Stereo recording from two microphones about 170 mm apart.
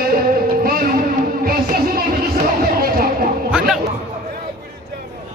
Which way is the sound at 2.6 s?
60° right (ahead or behind).